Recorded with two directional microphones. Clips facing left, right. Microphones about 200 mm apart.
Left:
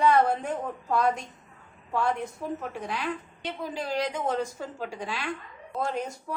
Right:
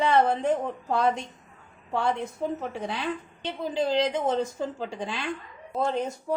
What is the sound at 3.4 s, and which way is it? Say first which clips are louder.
A woman's voice: right 6 dB; 25° right (ahead or behind).